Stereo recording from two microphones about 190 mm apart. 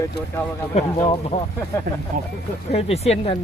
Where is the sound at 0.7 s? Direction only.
30° left (ahead or behind).